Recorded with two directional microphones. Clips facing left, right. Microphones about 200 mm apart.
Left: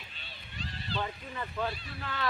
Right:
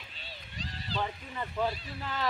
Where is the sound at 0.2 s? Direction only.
40° right (ahead or behind).